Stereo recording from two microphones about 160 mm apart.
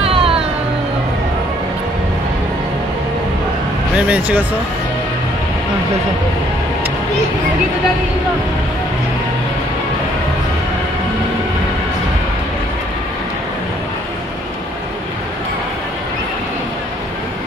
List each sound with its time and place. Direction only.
0.0 s music: 35° right (ahead or behind)
3.9 s speech: 10° right (ahead or behind)